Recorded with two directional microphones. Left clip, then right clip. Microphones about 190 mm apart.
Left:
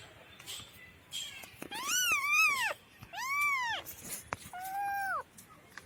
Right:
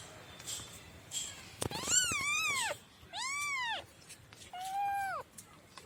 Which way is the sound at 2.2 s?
10° right (ahead or behind).